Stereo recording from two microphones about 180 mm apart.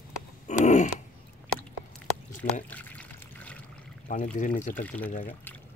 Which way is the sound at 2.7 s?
10° left (ahead or behind).